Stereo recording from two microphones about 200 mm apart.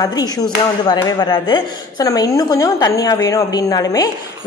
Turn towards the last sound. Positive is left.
turn(degrees=20)  # may be behind; listen again after turning